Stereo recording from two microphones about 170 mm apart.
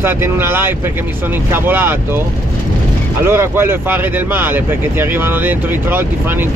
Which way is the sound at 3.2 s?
15° right (ahead or behind).